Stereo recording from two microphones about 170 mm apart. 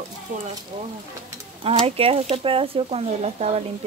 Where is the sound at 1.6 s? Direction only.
35° right (ahead or behind).